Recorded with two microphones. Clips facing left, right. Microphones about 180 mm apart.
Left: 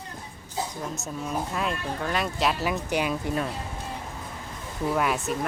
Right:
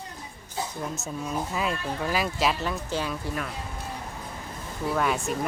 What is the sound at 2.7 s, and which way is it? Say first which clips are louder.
Speech: left 3 dB; 15° left (ahead or behind).